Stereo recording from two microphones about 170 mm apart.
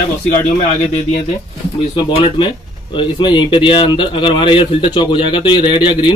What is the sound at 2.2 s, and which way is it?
Speech, 30° left (ahead or behind).